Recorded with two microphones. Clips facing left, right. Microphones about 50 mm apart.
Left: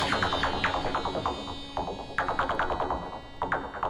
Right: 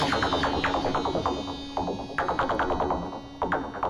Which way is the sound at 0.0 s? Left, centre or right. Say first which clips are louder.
Right 2 dB; centre.